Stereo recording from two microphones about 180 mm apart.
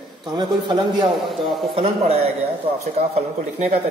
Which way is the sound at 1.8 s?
35° right (ahead or behind).